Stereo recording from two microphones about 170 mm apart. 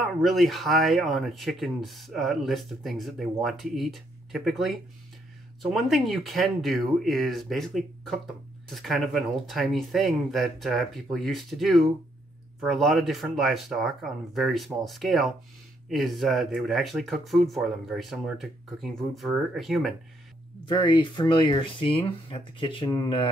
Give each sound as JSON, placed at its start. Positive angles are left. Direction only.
{"t": 0.2, "sound": "speech", "side_deg": 0}
{"t": 20.6, "sound": "speech", "side_deg": 25}